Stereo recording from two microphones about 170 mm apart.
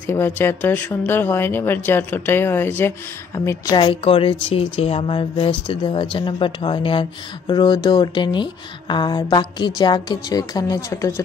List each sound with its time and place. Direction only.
0.0 s speech: 15° left (ahead or behind)
3.4 s a woman's voice: 25° left (ahead or behind)